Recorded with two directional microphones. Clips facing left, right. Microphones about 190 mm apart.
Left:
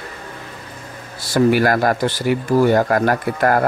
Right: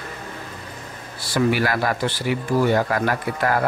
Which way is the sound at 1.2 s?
40° left (ahead or behind).